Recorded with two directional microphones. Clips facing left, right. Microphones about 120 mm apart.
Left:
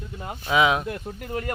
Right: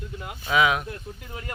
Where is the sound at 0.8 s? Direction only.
55° left (ahead or behind).